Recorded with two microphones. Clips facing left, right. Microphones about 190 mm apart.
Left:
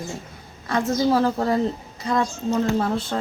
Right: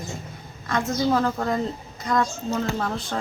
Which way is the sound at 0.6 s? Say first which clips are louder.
Left 2 dB; 35° left (ahead or behind).